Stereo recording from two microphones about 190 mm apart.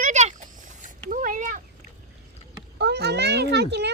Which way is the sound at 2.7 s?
60° right (ahead or behind).